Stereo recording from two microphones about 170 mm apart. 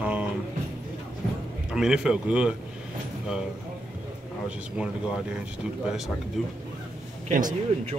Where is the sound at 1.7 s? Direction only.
5° right (ahead or behind).